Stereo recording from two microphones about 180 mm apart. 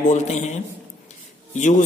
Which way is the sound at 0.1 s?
40° left (ahead or behind).